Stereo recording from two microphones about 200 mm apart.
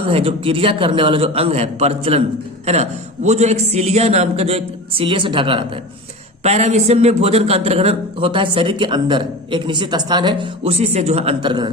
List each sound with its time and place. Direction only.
0.0 s a man's voice: 30° right (ahead or behind)